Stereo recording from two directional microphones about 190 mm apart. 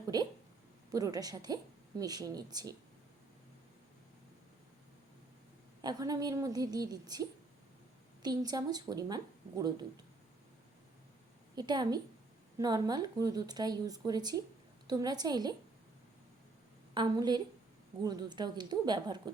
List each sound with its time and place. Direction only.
0.1 s speech: 20° right (ahead or behind)
5.8 s speech: 20° right (ahead or behind)
11.5 s speech: 20° right (ahead or behind)
16.9 s speech: 20° right (ahead or behind)